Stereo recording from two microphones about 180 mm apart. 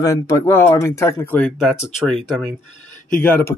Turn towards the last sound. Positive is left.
turn(degrees=10)  # may be behind; listen again after turning